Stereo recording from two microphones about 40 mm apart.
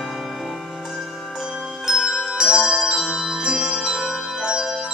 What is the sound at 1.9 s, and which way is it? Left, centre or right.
Glockenspiel, centre.